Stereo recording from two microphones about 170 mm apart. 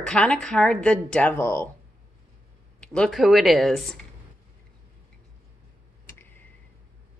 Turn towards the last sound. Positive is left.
turn(degrees=10)  # may be behind; listen again after turning